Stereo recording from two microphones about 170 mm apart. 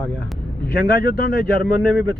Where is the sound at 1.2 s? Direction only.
55° left (ahead or behind).